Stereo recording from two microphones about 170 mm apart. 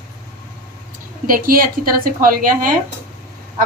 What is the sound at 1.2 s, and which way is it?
Speech, 55° right (ahead or behind).